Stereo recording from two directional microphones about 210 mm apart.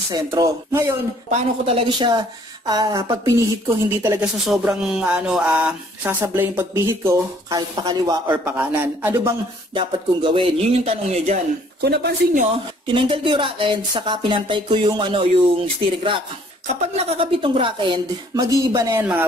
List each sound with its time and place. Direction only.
0.1 s speech: 15° right (ahead or behind)
1.3 s speech: 25° right (ahead or behind)
9.8 s speech: 25° right (ahead or behind)
11.8 s speech: 50° right (ahead or behind)
12.8 s speech: 25° right (ahead or behind)